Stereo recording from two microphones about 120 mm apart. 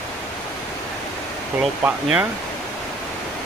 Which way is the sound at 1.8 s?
10° right (ahead or behind).